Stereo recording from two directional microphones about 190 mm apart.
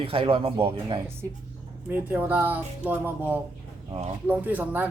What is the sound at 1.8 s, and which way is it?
Speech, 10° right (ahead or behind).